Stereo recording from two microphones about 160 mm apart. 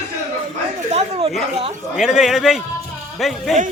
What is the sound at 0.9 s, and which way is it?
Speech, 40° right (ahead or behind).